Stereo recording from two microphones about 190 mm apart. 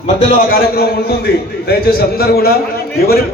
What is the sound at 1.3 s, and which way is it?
A man's voice, 55° left (ahead or behind).